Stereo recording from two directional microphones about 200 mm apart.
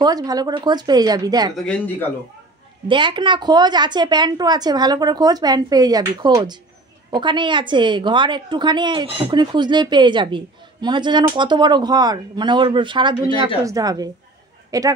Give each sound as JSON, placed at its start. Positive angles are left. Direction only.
{"t": 0.0, "sound": "a woman's voice", "side_deg": -20}
{"t": 1.6, "sound": "speech", "side_deg": 5}
{"t": 2.9, "sound": "a woman's voice", "side_deg": -25}